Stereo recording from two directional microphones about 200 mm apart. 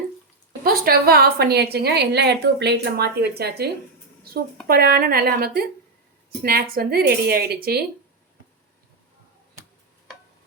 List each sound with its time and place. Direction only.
0.6 s a woman's voice: 50° right (ahead or behind)